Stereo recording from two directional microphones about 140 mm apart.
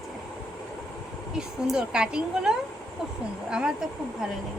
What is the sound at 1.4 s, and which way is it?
A woman's voice, 5° right (ahead or behind).